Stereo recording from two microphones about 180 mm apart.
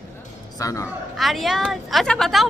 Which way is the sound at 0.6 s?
20° left (ahead or behind).